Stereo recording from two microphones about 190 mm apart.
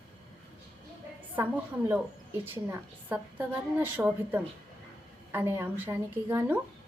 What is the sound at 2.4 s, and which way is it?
A woman's voice, 10° right (ahead or behind).